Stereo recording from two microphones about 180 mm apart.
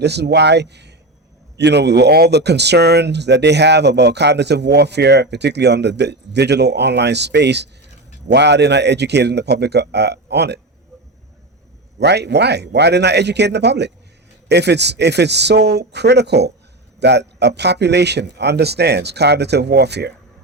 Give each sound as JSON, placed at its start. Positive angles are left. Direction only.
{"t": 0.0, "sound": "speech", "side_deg": -65}
{"t": 11.9, "sound": "speech", "side_deg": -70}